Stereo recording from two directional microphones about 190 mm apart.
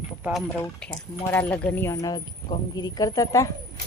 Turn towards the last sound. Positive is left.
turn(degrees=15)  # may be behind; listen again after turning